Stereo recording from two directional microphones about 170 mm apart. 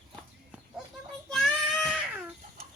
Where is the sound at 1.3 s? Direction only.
Centre (ahead or behind).